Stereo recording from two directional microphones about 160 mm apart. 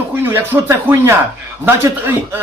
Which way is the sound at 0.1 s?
15° right (ahead or behind).